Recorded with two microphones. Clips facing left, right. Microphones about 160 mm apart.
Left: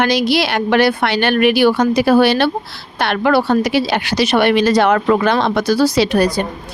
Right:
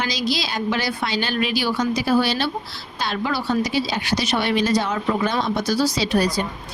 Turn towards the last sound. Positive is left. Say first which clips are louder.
# left 6 dB
turn(degrees=65)  # may be behind; listen again after turning